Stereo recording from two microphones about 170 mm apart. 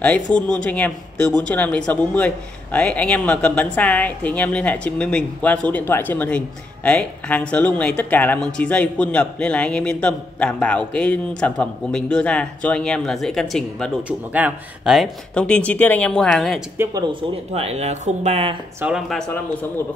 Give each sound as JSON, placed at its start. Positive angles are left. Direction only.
{"t": 0.0, "sound": "speech", "side_deg": 5}
{"t": 14.0, "sound": "speech", "side_deg": -10}
{"t": 16.7, "sound": "speech", "side_deg": -15}
{"t": 17.1, "sound": "speech", "side_deg": -35}
{"t": 18.8, "sound": "speech", "side_deg": -5}